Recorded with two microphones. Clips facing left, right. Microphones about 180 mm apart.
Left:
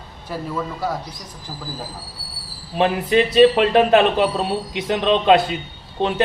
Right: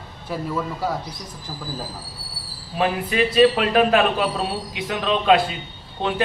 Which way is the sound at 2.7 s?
25° left (ahead or behind).